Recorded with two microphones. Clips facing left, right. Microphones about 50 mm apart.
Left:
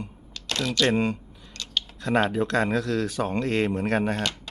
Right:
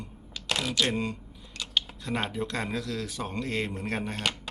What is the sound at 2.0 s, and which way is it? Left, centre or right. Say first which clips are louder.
Speech: left 8 dB; left.